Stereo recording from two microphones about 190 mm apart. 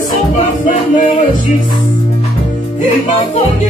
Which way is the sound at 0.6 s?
40° left (ahead or behind).